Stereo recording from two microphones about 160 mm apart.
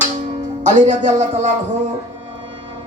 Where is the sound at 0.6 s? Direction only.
50° right (ahead or behind).